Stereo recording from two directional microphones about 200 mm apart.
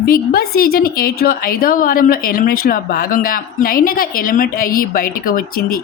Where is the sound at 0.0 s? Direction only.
50° left (ahead or behind).